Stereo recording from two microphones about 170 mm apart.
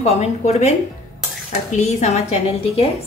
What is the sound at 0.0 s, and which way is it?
A woman's voice, 40° left (ahead or behind).